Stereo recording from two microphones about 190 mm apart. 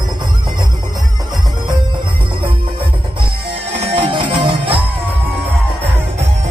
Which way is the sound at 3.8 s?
25° right (ahead or behind).